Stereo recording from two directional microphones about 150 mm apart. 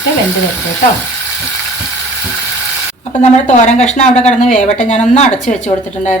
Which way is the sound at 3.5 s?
55° left (ahead or behind).